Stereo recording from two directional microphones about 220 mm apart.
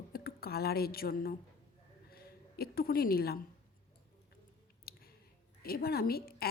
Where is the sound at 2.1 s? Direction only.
45° left (ahead or behind).